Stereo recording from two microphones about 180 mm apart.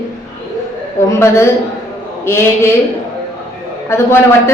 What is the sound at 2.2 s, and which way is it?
Speech, 15° left (ahead or behind).